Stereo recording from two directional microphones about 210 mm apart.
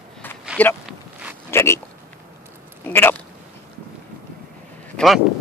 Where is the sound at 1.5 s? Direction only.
15° left (ahead or behind).